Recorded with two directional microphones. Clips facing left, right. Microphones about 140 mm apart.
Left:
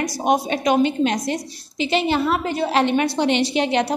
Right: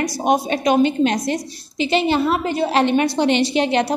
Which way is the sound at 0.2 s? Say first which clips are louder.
Right 1 dB; 25° right (ahead or behind).